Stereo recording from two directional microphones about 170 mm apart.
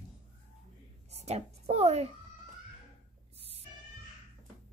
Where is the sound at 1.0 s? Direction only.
40° right (ahead or behind).